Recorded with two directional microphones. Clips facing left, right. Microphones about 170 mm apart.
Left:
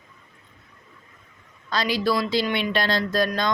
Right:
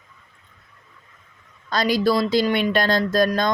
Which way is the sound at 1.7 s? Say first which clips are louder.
Right 4 dB; 45° right (ahead or behind).